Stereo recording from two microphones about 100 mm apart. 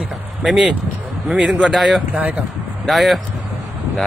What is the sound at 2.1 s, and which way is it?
Speech, 15° right (ahead or behind).